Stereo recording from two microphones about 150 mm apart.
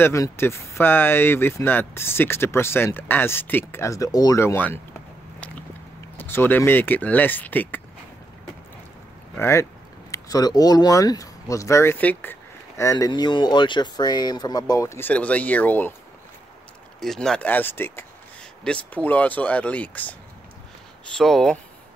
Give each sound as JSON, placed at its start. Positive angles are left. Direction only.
{"t": 0.0, "sound": "speech", "side_deg": 20}
{"t": 6.1, "sound": "speech", "side_deg": 15}
{"t": 9.4, "sound": "speech", "side_deg": 15}
{"t": 17.0, "sound": "speech", "side_deg": 5}
{"t": 21.2, "sound": "speech", "side_deg": 5}